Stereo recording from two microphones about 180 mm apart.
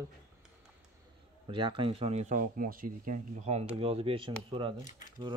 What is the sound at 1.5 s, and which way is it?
Speech, 30° right (ahead or behind).